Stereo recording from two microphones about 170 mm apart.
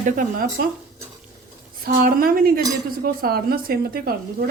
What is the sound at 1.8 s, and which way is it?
Speech, 60° right (ahead or behind).